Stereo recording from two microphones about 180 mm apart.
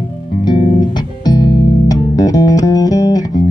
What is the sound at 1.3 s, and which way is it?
Music, 20° left (ahead or behind).